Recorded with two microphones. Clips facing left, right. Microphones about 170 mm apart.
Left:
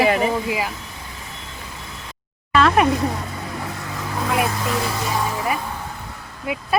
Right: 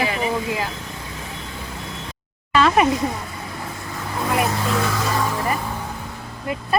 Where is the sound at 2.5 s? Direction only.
Centre (ahead or behind).